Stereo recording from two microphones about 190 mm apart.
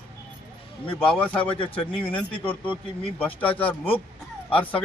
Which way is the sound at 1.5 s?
25° left (ahead or behind).